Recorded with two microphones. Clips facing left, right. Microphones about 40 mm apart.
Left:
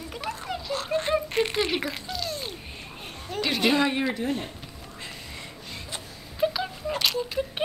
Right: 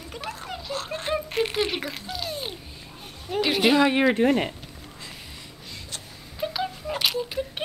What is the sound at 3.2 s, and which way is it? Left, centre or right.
Speech, centre.